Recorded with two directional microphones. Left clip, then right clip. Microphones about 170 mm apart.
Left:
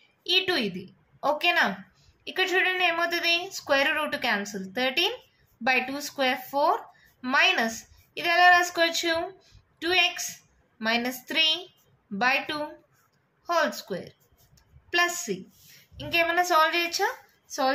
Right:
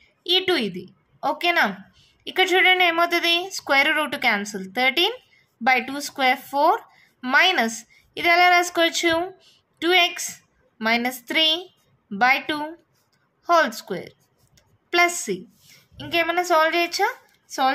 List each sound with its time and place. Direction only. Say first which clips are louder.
0.2 s a woman's voice: right 4 dB; 40° right (ahead or behind)
13.5 s a sound: right 7 dB; 45° right (ahead or behind)
16.0 s a woman's voice: right 2 dB; 40° right (ahead or behind)